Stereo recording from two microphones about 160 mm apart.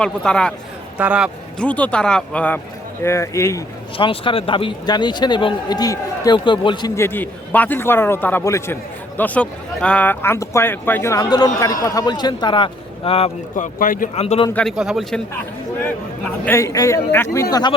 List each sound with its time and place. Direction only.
0.0 s a man's voice: 5° left (ahead or behind)
0.9 s a man's voice: 10° right (ahead or behind)
1.5 s a man's voice: 10° left (ahead or behind)
3.9 s speech: 35° left (ahead or behind)
6.9 s a man's voice: 15° left (ahead or behind); by 13.3 s 35° left (ahead or behind)
13.6 s speech: 60° left (ahead or behind)
14.2 s a man's voice: 40° left (ahead or behind)
14.5 s a man's voice: centre (ahead or behind)
15.8 s a man's voice: 15° left (ahead or behind)
17.5 s speech: 25° left (ahead or behind)